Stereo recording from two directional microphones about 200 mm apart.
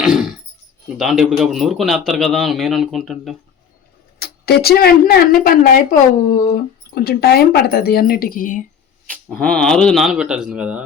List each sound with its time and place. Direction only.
0.0 s a sound: centre (ahead or behind)
0.9 s a man's voice: centre (ahead or behind)
4.2 s speech: 50° left (ahead or behind)
9.0 s a man's voice: 5° left (ahead or behind)